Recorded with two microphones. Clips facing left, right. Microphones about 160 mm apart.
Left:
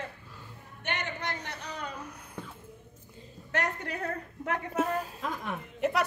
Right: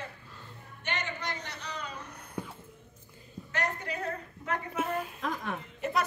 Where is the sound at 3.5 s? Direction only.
55° left (ahead or behind).